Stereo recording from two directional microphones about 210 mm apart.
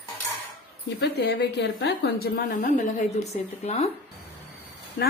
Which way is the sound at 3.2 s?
30° left (ahead or behind).